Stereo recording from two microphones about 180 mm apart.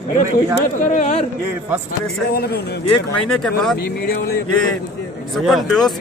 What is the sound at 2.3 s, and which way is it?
Speech, 60° left (ahead or behind).